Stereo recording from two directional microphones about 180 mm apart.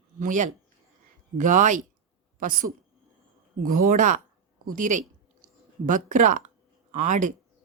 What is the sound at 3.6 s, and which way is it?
Speech, 50° right (ahead or behind).